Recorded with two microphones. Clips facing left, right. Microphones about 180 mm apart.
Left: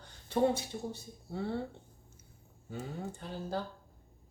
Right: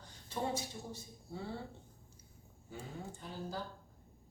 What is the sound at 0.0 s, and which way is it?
Speech, 65° left (ahead or behind).